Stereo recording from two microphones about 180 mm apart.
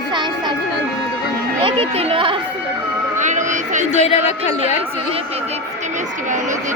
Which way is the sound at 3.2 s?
45° right (ahead or behind).